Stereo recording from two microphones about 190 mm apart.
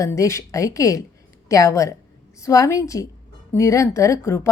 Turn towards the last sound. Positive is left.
turn(degrees=15)  # may be behind; listen again after turning